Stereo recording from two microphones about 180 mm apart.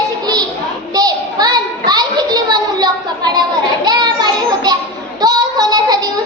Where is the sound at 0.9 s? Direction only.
20° right (ahead or behind).